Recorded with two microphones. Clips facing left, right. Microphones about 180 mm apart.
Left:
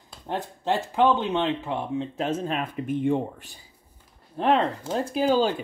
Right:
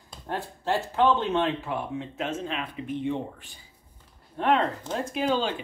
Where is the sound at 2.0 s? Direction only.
35° left (ahead or behind).